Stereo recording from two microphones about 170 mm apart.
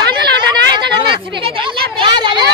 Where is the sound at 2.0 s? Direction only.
25° right (ahead or behind).